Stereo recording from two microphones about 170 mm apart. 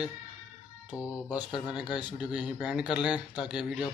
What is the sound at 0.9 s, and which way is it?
Speech, 20° left (ahead or behind).